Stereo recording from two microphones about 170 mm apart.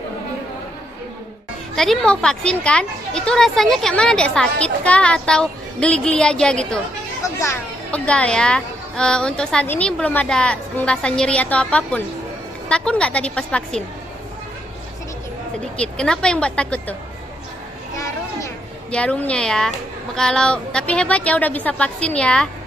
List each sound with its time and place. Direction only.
1.8 s speech: 5° left (ahead or behind)
7.3 s a sound: 15° left (ahead or behind)
8.0 s a woman's voice: 5° left (ahead or behind)
15.8 s a woman's voice: 5° left (ahead or behind)
17.9 s a sound: 20° left (ahead or behind)
18.9 s a woman's voice: 5° left (ahead or behind)